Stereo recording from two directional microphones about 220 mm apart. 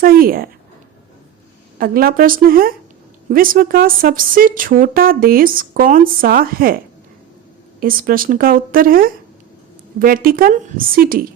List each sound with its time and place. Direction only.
0.0 s speech: 40° right (ahead or behind)
1.8 s speech: 40° right (ahead or behind)
7.8 s speech: 40° right (ahead or behind)